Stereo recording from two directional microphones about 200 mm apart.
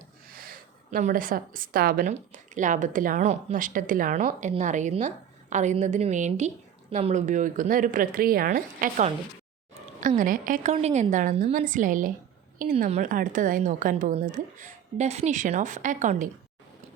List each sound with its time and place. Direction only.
0.3 s a woman's voice: 45° right (ahead or behind)